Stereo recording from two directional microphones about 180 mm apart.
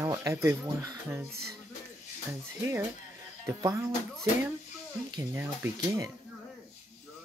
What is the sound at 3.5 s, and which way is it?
Speech, 15° right (ahead or behind).